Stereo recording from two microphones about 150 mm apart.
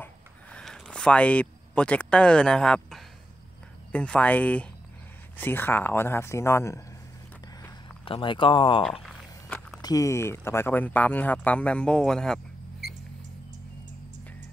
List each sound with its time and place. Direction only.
0.0 s a sound: 5° left (ahead or behind)
3.9 s speech: 10° left (ahead or behind)
8.0 s speech: 35° left (ahead or behind)
9.0 s walk: 5° left (ahead or behind)
9.8 s speech: 25° left (ahead or behind); by 12.4 s 5° left (ahead or behind)